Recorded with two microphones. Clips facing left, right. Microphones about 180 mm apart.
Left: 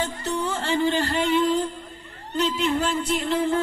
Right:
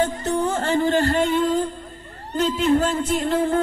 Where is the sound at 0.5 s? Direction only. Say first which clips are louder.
Right 2 dB; 45° right (ahead or behind).